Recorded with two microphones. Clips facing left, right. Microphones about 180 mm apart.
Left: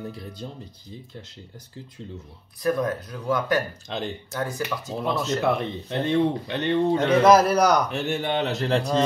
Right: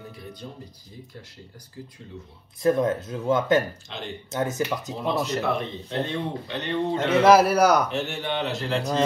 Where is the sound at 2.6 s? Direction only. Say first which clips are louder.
Right 3 dB; 25° right (ahead or behind).